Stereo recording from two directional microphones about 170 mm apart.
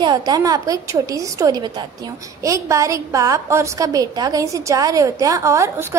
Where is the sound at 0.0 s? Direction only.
25° right (ahead or behind).